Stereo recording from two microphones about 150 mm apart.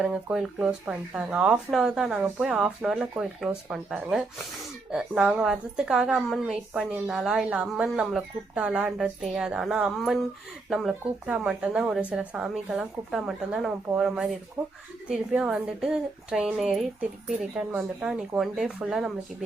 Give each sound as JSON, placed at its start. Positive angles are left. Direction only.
{"t": 0.0, "sound": "speech", "side_deg": -5}
{"t": 14.6, "sound": "speech", "side_deg": -20}
{"t": 15.0, "sound": "speech", "side_deg": -5}